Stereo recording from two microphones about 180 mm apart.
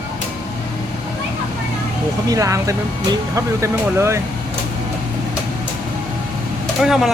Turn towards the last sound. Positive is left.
turn(degrees=0)  # may be behind; listen again after turning